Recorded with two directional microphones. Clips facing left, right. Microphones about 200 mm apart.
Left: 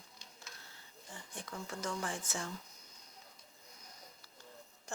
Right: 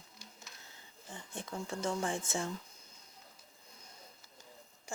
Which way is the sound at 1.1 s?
25° right (ahead or behind).